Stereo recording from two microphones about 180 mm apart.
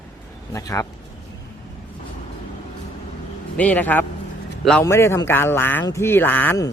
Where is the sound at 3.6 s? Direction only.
10° left (ahead or behind).